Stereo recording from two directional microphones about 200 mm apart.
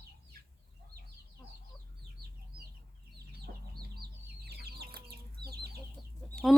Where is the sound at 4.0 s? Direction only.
55° right (ahead or behind).